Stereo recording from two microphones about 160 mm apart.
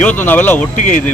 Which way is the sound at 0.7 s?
55° left (ahead or behind).